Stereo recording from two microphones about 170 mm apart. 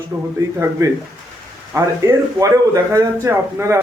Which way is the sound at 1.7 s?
20° right (ahead or behind).